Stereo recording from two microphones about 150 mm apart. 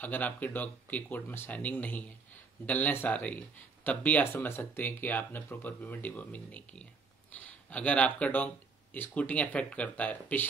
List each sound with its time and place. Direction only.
0.0 s speech: 10° left (ahead or behind)